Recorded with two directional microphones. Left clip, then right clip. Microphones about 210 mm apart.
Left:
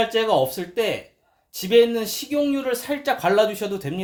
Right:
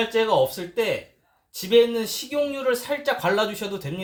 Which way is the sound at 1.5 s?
45° left (ahead or behind).